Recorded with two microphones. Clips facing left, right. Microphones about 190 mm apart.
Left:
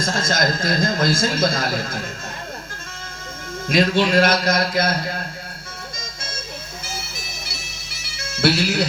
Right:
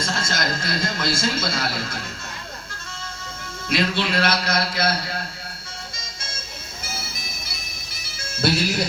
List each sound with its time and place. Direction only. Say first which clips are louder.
0.3 s a man's voice: left 5 dB; 45° left (ahead or behind)
3.7 s a man's voice: left 5 dB; 40° left (ahead or behind)
8.3 s music: left 3 dB; 75° left (ahead or behind)